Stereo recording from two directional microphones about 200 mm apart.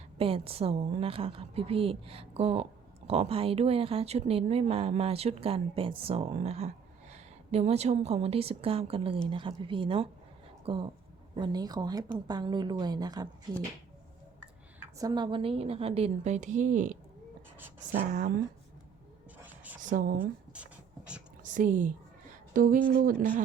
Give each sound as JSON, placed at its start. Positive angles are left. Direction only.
{"t": 0.2, "sound": "a woman's voice", "side_deg": -30}
{"t": 14.9, "sound": "speech", "side_deg": -20}
{"t": 19.5, "sound": "a sound", "side_deg": -10}
{"t": 19.8, "sound": "speech", "side_deg": -40}
{"t": 20.1, "sound": "speech", "side_deg": -5}
{"t": 21.4, "sound": "speech", "side_deg": -40}